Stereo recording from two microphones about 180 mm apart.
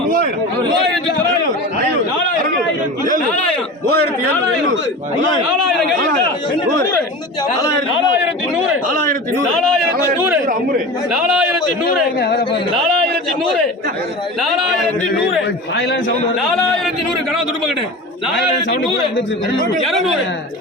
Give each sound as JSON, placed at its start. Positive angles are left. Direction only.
{"t": 3.8, "sound": "a man's voice", "side_deg": -60}
{"t": 11.1, "sound": "a man's voice", "side_deg": -5}
{"t": 11.9, "sound": "speech", "side_deg": 55}
{"t": 14.4, "sound": "a man's voice", "side_deg": 0}
{"t": 18.3, "sound": "a man's voice", "side_deg": 70}